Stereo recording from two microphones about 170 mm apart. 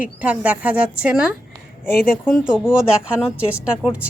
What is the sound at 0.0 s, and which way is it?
A woman's voice, 10° right (ahead or behind).